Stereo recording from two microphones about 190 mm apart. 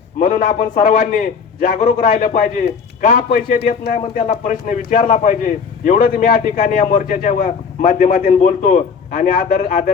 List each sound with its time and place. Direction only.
0.2 s a man's voice: 45° left (ahead or behind)